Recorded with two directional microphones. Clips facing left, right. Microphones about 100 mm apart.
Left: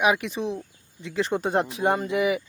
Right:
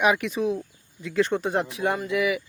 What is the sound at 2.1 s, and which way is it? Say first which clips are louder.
Speech: left 1 dB; 30° left (ahead or behind).